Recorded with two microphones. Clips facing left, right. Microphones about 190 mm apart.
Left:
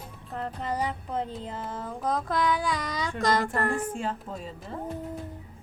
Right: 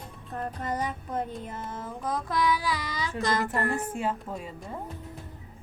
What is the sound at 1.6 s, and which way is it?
Child singing, centre (ahead or behind).